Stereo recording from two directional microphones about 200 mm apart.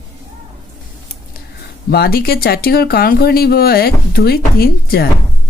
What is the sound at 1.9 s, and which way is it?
Speech, 50° left (ahead or behind).